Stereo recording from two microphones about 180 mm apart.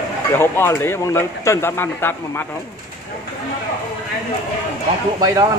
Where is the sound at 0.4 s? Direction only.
15° left (ahead or behind).